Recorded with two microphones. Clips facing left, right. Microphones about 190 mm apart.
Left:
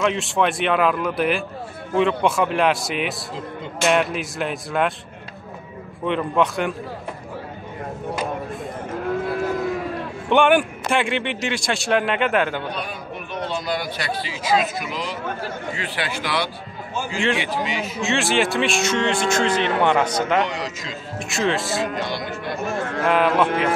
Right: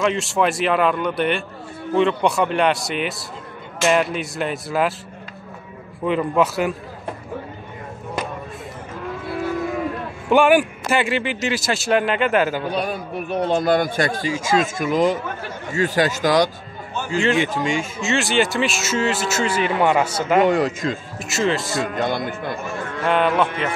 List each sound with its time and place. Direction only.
0.0 s a man's voice: centre (ahead or behind)
6.0 s a man's voice: 5° right (ahead or behind)
10.3 s a man's voice: 5° right (ahead or behind)
12.7 s speech: 40° right (ahead or behind)
16.9 s a sound: 5° left (ahead or behind)
17.6 s speech: 45° right (ahead or behind)
18.0 s a man's voice: centre (ahead or behind)
20.4 s speech: 50° right (ahead or behind)
21.2 s a man's voice: centre (ahead or behind)
21.9 s speech: 50° right (ahead or behind)
23.0 s a man's voice: centre (ahead or behind)